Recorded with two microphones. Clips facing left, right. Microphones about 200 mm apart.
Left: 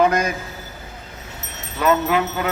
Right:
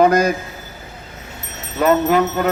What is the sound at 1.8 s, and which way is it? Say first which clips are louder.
Speech: right 4 dB; 45° right (ahead or behind).